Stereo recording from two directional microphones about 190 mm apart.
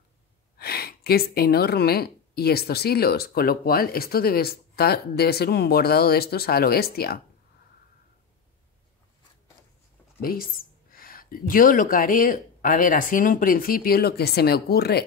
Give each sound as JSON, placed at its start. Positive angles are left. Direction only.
{"t": 0.6, "sound": "a woman's voice", "side_deg": 55}
{"t": 10.2, "sound": "speech", "side_deg": 50}